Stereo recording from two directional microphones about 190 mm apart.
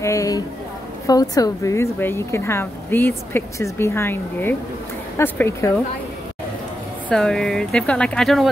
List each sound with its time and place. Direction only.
0.0 s a sound: 15° left (ahead or behind)
1.0 s a woman's voice: 20° left (ahead or behind)
7.1 s speech: 5° left (ahead or behind)